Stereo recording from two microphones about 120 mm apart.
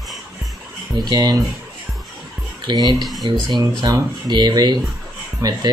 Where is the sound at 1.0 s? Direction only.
35° right (ahead or behind).